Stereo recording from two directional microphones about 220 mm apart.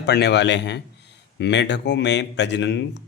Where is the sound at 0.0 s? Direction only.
50° left (ahead or behind).